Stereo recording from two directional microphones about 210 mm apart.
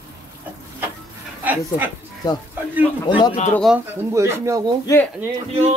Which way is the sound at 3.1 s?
20° left (ahead or behind).